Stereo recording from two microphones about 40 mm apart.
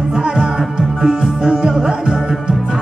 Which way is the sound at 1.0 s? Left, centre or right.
Right.